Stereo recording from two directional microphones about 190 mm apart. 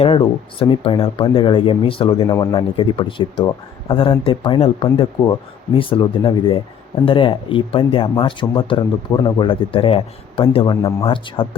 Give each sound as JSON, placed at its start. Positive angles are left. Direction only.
{"t": 0.0, "sound": "speech", "side_deg": 30}